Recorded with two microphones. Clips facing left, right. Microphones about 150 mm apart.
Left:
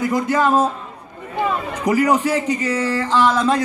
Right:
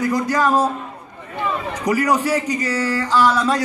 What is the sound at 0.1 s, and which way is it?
Speech, 25° left (ahead or behind).